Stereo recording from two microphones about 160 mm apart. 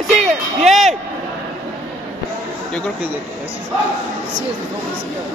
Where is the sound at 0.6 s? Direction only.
Centre (ahead or behind).